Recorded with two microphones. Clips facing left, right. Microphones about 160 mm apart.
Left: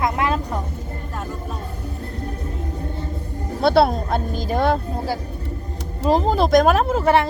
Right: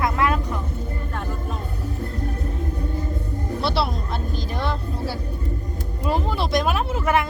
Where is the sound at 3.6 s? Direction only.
50° left (ahead or behind).